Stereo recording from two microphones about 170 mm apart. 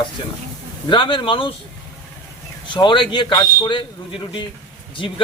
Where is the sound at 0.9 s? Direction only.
30° left (ahead or behind).